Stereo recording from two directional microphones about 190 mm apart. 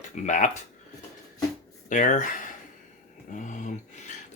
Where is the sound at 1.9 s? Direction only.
40° left (ahead or behind).